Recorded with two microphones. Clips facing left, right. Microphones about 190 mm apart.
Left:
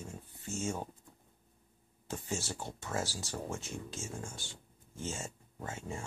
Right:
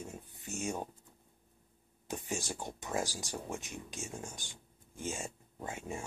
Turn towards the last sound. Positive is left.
turn(degrees=-15)  # may be behind; listen again after turning